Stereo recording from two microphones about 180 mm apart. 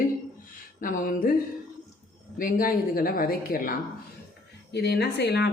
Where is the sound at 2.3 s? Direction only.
50° left (ahead or behind).